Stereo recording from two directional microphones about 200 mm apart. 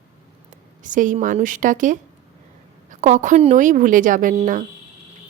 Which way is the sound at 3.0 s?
40° right (ahead or behind).